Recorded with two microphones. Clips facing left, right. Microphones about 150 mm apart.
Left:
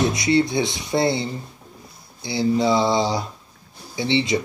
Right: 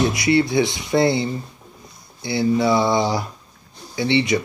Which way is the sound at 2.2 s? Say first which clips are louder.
Right 1 dB; 20° left (ahead or behind).